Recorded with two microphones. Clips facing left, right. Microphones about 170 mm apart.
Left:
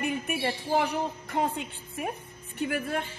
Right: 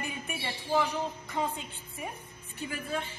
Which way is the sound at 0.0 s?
60° left (ahead or behind).